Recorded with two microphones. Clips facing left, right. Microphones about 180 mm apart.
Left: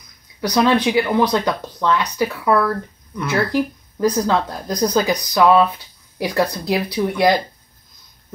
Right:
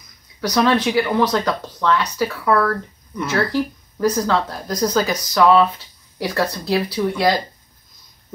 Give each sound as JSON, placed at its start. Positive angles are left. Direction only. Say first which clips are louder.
{"t": 0.4, "sound": "speech", "louder": "left 1 dB", "side_deg": 15}